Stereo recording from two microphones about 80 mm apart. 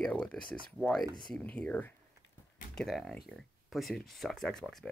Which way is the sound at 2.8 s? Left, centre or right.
Centre.